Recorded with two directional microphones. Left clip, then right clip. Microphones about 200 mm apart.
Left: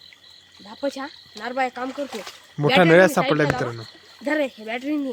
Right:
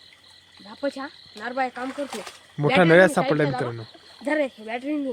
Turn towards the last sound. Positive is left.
turn(degrees=55)  # may be behind; listen again after turning